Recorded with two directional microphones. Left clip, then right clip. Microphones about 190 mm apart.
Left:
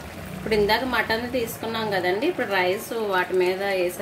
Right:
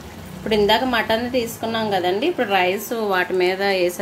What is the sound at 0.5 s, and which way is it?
A woman's voice, 35° right (ahead or behind).